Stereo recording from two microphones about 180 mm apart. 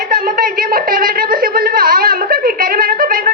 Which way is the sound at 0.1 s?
55° right (ahead or behind).